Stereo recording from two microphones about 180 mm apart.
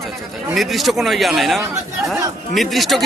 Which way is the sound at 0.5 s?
Centre (ahead or behind).